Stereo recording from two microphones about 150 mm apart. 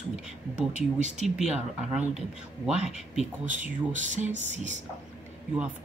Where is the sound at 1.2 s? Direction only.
5° right (ahead or behind).